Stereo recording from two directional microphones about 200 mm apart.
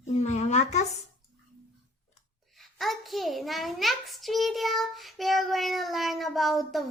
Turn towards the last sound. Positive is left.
turn(degrees=0)  # may be behind; listen again after turning